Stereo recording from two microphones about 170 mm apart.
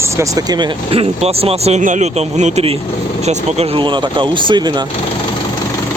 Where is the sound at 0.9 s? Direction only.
35° right (ahead or behind).